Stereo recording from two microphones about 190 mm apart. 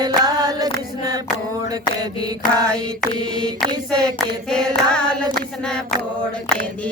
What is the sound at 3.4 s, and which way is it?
Mantra, 5° left (ahead or behind).